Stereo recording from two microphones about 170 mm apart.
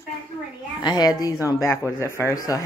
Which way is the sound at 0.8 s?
25° left (ahead or behind).